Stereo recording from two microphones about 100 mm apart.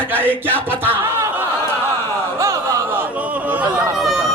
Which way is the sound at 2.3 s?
30° right (ahead or behind).